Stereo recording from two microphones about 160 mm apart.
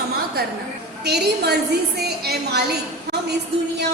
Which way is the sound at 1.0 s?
90° right.